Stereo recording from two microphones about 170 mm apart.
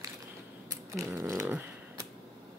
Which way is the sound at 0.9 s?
15° right (ahead or behind).